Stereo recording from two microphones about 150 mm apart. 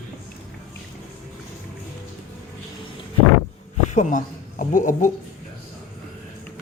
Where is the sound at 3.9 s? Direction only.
50° left (ahead or behind).